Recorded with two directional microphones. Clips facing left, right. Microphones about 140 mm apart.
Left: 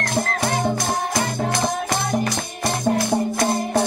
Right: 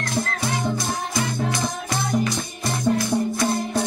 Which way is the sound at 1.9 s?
80° left.